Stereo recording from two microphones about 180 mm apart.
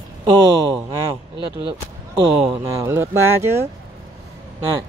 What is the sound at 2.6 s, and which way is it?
Speech, 15° right (ahead or behind).